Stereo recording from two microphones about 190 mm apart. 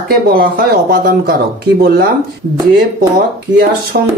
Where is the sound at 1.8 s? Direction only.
50° right (ahead or behind).